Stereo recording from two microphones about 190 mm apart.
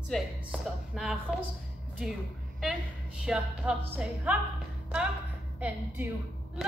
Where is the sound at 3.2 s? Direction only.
5° right (ahead or behind).